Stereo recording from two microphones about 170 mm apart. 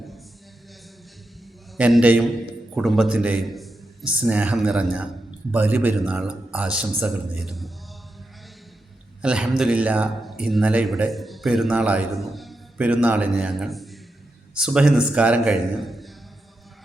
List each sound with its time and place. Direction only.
1.7 s a man's voice: 5° right (ahead or behind)
9.2 s a man's voice: 5° right (ahead or behind)